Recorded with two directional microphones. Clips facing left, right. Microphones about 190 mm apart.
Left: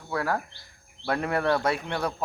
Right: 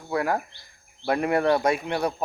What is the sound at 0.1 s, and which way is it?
Speech, 15° right (ahead or behind).